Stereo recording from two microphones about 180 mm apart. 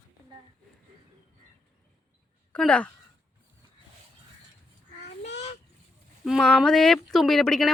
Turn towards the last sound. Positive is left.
turn(degrees=0)  # may be behind; listen again after turning